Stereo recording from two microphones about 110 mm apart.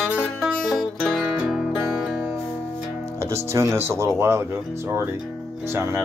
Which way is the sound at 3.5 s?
25° right (ahead or behind).